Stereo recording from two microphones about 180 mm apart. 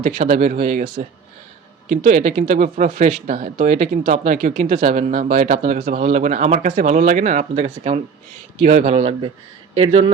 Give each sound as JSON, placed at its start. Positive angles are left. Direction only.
{"t": 0.0, "sound": "speech", "side_deg": -45}